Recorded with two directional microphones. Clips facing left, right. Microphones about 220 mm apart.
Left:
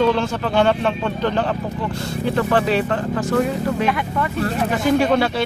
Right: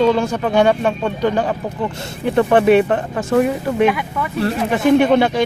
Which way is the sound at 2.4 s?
25° right (ahead or behind).